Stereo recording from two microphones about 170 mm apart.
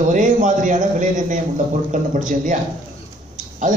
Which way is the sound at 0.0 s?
50° right (ahead or behind).